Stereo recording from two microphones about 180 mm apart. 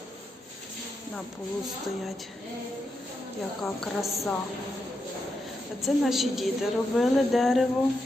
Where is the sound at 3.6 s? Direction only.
Centre (ahead or behind).